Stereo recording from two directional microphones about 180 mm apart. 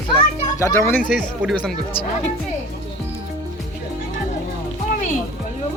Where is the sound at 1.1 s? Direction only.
5° right (ahead or behind).